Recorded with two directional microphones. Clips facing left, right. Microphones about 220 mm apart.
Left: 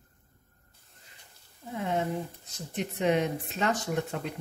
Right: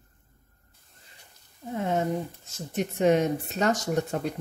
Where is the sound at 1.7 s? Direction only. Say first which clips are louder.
Right 3 dB; 45° right (ahead or behind).